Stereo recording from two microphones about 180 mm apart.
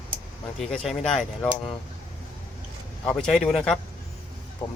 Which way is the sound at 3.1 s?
5° left (ahead or behind).